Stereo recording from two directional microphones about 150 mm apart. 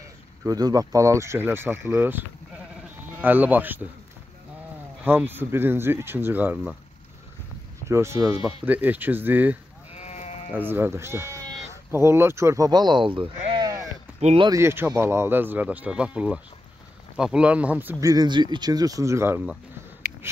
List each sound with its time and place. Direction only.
0.5 s speech: 25° right (ahead or behind)
5.0 s speech: 15° right (ahead or behind)
7.9 s speech: 20° right (ahead or behind)
9.9 s sheep: 45° left (ahead or behind)
10.5 s speech: 15° right (ahead or behind); by 13.3 s 35° right (ahead or behind)
13.6 s a sound: 25° right (ahead or behind)
14.2 s speech: 40° right (ahead or behind)
14.5 s speech: 15° right (ahead or behind)
18.0 s speech: 25° right (ahead or behind)